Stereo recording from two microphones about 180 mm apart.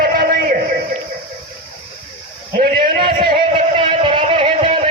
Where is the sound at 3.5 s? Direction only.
30° right (ahead or behind).